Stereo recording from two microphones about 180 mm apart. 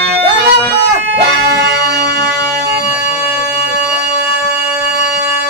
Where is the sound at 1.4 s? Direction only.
65° right (ahead or behind).